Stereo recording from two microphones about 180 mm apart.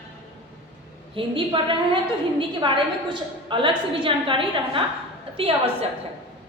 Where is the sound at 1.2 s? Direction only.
30° right (ahead or behind).